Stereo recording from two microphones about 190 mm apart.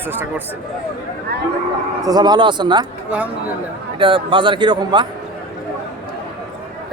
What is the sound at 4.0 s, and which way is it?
Speech, 25° right (ahead or behind).